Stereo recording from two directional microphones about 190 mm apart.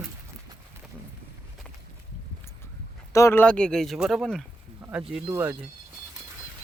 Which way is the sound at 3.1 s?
15° left (ahead or behind).